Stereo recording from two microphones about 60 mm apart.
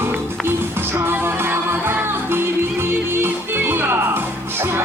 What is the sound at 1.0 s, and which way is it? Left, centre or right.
Music, right.